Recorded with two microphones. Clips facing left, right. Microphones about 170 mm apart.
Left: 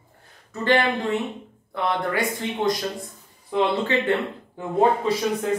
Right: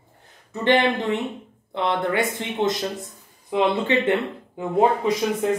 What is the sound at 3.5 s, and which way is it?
Speech, 20° right (ahead or behind).